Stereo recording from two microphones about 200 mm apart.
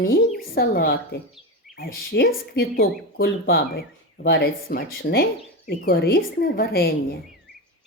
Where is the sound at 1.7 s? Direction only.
50° left (ahead or behind).